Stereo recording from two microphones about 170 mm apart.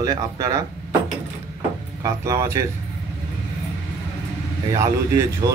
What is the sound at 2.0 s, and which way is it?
Speech, 20° right (ahead or behind).